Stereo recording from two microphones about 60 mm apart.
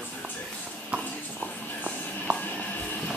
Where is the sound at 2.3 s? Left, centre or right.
Right.